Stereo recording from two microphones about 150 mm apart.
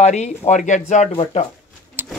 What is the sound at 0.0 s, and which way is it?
Speech, 50° left (ahead or behind).